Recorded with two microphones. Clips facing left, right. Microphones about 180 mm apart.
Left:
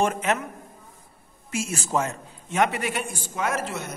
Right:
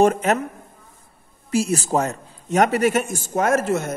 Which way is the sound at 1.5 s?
35° right (ahead or behind).